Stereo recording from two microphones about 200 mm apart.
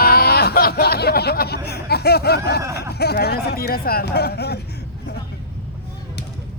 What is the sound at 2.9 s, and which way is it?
Speech, 55° left (ahead or behind).